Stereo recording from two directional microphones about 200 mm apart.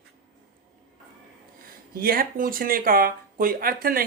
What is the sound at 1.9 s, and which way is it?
Speech, 45° right (ahead or behind).